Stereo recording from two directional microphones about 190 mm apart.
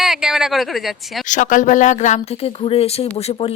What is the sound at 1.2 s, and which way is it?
Speech, 40° left (ahead or behind).